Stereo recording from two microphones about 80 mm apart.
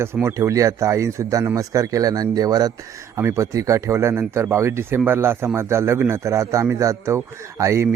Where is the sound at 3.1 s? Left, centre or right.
Right.